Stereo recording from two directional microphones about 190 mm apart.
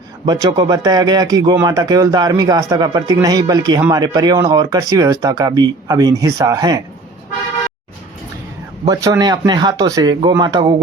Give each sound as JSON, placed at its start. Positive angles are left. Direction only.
{"t": 0.3, "sound": "speech", "side_deg": -20}
{"t": 8.9, "sound": "speech", "side_deg": -20}